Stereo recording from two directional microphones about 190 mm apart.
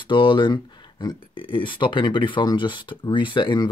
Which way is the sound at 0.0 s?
25° left (ahead or behind).